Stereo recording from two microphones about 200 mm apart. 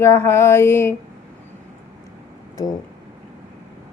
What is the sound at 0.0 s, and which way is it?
Speech, 10° left (ahead or behind).